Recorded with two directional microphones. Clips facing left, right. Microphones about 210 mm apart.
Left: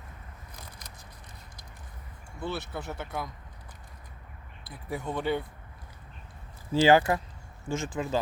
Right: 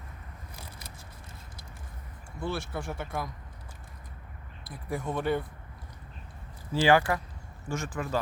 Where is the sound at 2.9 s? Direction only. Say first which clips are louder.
Right 1 dB; centre (ahead or behind).